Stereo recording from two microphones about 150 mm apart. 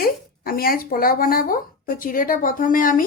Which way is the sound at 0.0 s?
80° left.